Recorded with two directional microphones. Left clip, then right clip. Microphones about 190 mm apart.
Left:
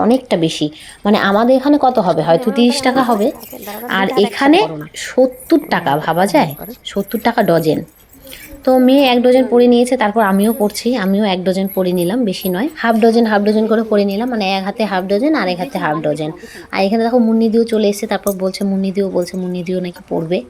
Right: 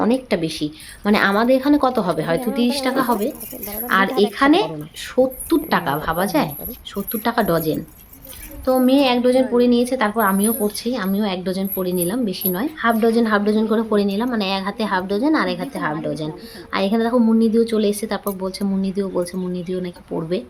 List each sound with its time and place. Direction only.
0.1 s a woman's voice: 20° left (ahead or behind)